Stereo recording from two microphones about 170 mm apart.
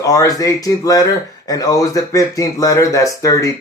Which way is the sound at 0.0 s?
20° left (ahead or behind).